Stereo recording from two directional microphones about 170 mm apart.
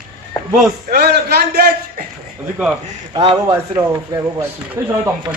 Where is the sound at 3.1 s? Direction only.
30° right (ahead or behind).